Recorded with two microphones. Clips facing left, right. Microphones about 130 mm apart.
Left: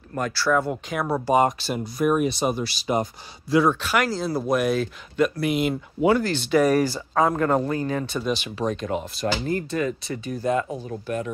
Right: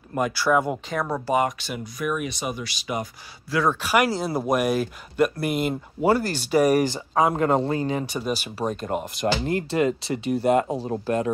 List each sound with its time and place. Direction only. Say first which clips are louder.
0.1 s speech: right 1 dB; 15° right (ahead or behind)
0.8 s speech: left 1 dB; 10° left (ahead or behind)
1.3 s speech: left 4 dB; 30° left (ahead or behind)
3.5 s speech: left 5 dB; 20° left (ahead or behind)
3.8 s speech: right 2 dB; 10° right (ahead or behind)
5.4 s speech: left 2 dB; 50° right (ahead or behind)
6.1 s speech: left 1 dB; 10° right (ahead or behind)
9.2 s speech: right 2 dB; 25° right (ahead or behind)